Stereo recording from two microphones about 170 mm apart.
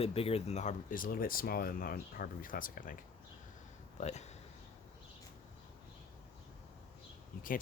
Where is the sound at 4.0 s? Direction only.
40° left (ahead or behind).